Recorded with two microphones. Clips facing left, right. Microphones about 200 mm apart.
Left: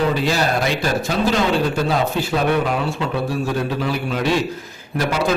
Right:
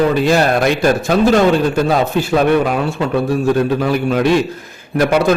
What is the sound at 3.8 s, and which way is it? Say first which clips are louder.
Speech: right 7 dB; 55° right (ahead or behind).